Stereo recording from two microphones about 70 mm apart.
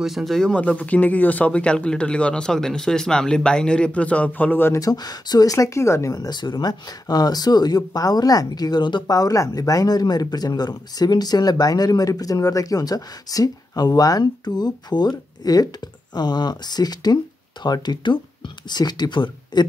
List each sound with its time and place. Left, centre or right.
0.0 s speech: centre
0.5 s speech: centre
4.7 s speech: left
5.8 s speech: left
6.1 s speech: left
16.2 s speech: left